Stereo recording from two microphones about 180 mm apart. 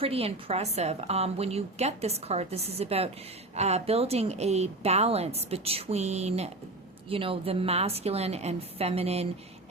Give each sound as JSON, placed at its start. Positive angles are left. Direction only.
{"t": 0.0, "sound": "a woman's voice", "side_deg": -35}